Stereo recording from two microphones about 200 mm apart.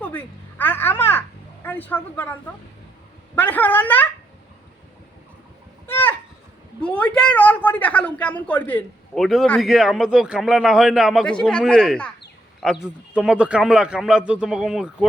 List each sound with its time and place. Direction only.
0.0 s a child's voice: 10° left (ahead or behind)
5.8 s a sound: 10° left (ahead or behind)
6.8 s a woman's voice: 5° left (ahead or behind)